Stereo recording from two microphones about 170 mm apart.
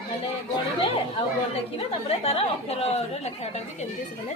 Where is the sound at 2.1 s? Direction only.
35° left (ahead or behind).